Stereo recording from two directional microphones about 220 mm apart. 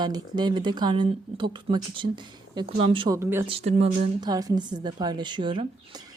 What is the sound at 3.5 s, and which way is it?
A woman's voice, 25° right (ahead or behind).